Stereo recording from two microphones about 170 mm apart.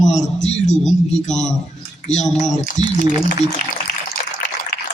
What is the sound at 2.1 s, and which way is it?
Speech, 45° left (ahead or behind).